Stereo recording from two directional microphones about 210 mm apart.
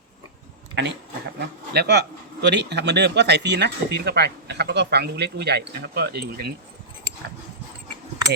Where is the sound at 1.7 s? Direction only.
50° right (ahead or behind).